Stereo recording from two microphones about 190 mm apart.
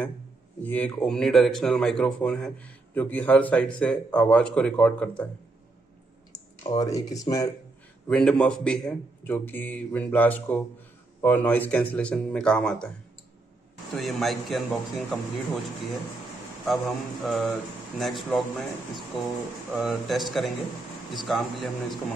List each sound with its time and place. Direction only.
0.6 s speech: 10° left (ahead or behind)
6.3 s a sound: 20° left (ahead or behind)
6.7 s speech: 20° left (ahead or behind)
8.1 s a man's voice: 5° left (ahead or behind)
13.9 s speech: centre (ahead or behind)
17.2 s speech: centre (ahead or behind)